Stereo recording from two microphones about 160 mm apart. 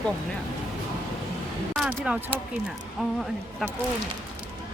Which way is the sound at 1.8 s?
5° right (ahead or behind).